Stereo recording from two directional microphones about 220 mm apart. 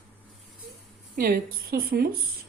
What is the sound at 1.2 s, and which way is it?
Speech, 40° right (ahead or behind).